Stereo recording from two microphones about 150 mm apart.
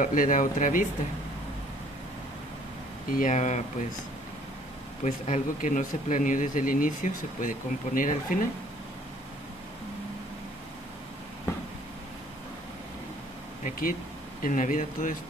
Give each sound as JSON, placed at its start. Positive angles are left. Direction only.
{"t": 0.0, "sound": "speech", "side_deg": 60}
{"t": 3.1, "sound": "speech", "side_deg": 60}
{"t": 5.0, "sound": "speech", "side_deg": 50}
{"t": 13.7, "sound": "speech", "side_deg": 70}
{"t": 14.4, "sound": "speech", "side_deg": 60}